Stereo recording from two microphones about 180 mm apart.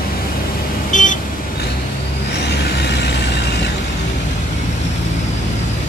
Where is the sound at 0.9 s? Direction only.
45° left (ahead or behind).